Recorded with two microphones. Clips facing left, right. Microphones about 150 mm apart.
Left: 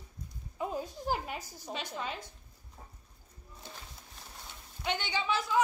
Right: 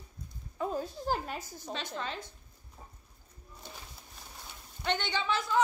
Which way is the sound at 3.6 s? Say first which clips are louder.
Even; centre (ahead or behind).